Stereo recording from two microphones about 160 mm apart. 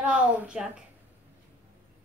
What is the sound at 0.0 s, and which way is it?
Speech, 10° right (ahead or behind).